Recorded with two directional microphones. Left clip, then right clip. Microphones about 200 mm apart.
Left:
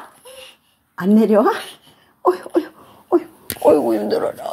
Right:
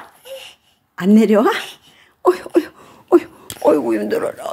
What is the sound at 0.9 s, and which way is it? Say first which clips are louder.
Speech: right 1 dB; 20° right (ahead or behind).